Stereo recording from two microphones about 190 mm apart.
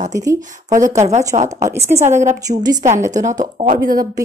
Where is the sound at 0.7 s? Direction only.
45° right (ahead or behind).